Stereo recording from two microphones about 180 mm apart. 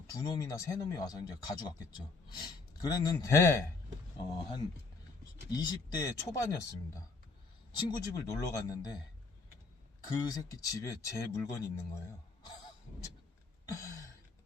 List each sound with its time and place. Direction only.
0.1 s speech: 20° left (ahead or behind)
5.5 s speech: 20° left (ahead or behind)
10.0 s speech: 20° left (ahead or behind)
13.7 s a sound: 20° left (ahead or behind)